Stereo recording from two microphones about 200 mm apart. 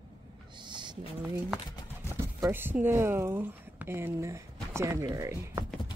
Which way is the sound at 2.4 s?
10° right (ahead or behind).